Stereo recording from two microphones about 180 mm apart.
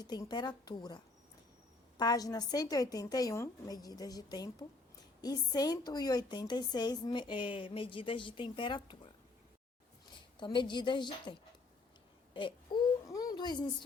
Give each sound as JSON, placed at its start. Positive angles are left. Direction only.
{"t": 0.0, "sound": "a woman's voice", "side_deg": 25}
{"t": 10.4, "sound": "a woman's voice", "side_deg": 25}
{"t": 12.3, "sound": "a sound", "side_deg": 25}